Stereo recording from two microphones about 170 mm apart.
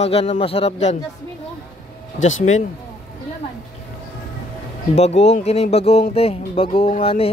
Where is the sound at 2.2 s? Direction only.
45° left (ahead or behind).